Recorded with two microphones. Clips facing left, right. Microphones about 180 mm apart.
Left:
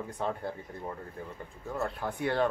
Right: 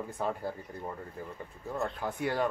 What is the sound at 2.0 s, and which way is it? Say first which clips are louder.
Speech: left 3 dB; 5° right (ahead or behind).